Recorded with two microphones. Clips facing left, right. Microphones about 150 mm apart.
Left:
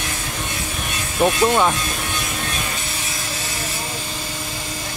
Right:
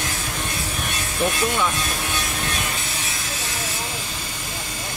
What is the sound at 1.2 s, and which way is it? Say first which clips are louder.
Speech: left 6 dB; 55° left (ahead or behind).